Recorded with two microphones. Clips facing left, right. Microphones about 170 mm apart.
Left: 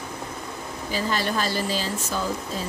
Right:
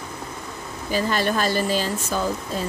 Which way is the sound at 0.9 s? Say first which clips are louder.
Right 4 dB; 55° right (ahead or behind).